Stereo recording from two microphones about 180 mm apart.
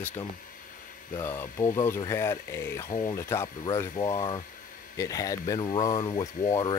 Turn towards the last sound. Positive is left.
turn(degrees=25)  # may be behind; listen again after turning